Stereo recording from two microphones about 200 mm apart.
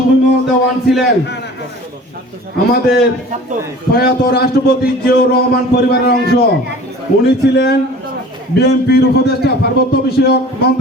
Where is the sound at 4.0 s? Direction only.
50° left (ahead or behind).